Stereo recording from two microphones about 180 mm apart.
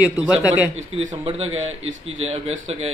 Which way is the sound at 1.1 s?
30° right (ahead or behind).